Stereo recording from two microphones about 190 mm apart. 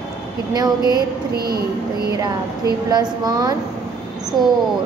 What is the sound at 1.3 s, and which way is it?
Speech, 55° right (ahead or behind).